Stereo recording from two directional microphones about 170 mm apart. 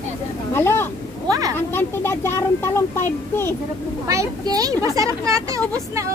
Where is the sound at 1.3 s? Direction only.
20° right (ahead or behind).